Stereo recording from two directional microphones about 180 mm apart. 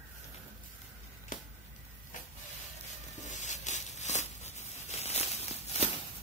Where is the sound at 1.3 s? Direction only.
45° left (ahead or behind).